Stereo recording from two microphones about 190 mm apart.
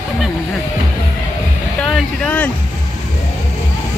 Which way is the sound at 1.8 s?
5° left (ahead or behind).